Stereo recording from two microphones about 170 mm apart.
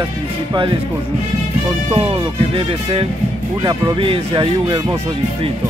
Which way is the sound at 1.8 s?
35° right (ahead or behind).